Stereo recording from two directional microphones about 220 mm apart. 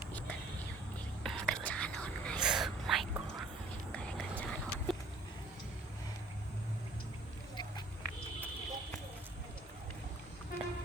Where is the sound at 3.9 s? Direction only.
5° left (ahead or behind).